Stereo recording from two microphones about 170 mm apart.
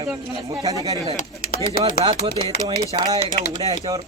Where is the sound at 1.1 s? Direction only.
55° left (ahead or behind).